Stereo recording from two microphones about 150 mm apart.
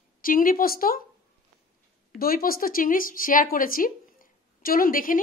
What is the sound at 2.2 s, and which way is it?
A woman's voice, 75° left (ahead or behind).